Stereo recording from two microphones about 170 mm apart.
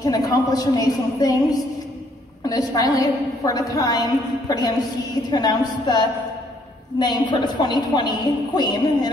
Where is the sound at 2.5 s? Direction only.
20° left (ahead or behind).